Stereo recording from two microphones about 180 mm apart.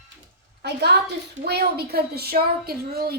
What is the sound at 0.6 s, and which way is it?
A woman's voice, 65° right (ahead or behind).